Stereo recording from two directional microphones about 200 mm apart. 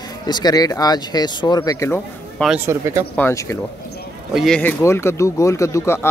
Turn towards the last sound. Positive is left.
turn(degrees=15)  # may be behind; listen again after turning